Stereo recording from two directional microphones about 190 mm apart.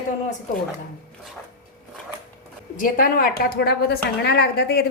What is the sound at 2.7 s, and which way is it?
A woman's voice, 50° left (ahead or behind).